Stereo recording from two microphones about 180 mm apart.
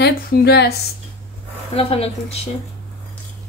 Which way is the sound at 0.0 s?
60° left (ahead or behind).